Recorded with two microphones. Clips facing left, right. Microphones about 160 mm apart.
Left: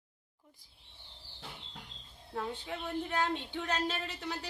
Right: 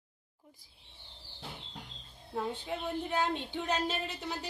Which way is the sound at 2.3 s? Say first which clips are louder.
Right 3 dB; 15° right (ahead or behind).